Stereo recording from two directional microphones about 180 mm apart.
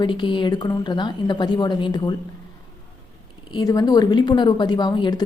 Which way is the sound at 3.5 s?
20° left (ahead or behind).